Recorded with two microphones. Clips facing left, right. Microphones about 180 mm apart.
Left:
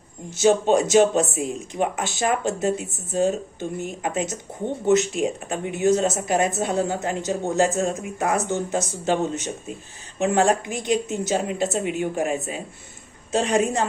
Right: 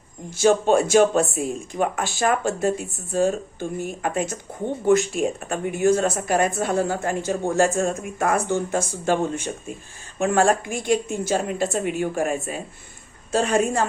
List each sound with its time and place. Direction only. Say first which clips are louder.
0.3 s speech: even; 20° left (ahead or behind)
10.2 s a woman's voice: even; 20° left (ahead or behind)